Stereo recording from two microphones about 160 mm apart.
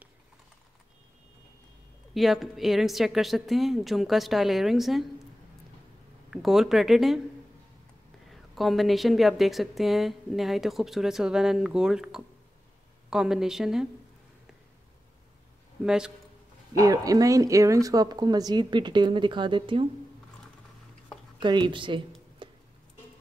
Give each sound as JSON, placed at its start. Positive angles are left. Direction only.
{"t": 2.1, "sound": "speech", "side_deg": 0}
{"t": 6.3, "sound": "speech", "side_deg": 0}
{"t": 8.3, "sound": "speech", "side_deg": 0}
{"t": 15.8, "sound": "speech", "side_deg": -5}
{"t": 16.7, "sound": "speech", "side_deg": -20}
{"t": 21.4, "sound": "speech", "side_deg": -30}
{"t": 22.4, "sound": "tick-tock", "side_deg": -30}